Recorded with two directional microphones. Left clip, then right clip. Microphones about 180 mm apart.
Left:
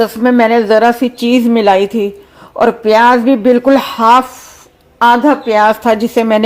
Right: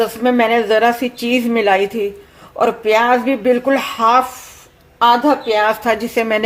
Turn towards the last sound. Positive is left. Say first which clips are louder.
# left 5 dB
turn(degrees=35)  # may be behind; listen again after turning